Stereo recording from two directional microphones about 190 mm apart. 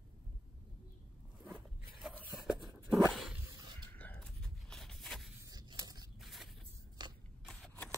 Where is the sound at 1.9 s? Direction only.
5° right (ahead or behind).